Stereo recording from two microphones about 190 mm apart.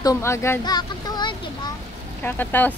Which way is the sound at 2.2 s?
10° left (ahead or behind).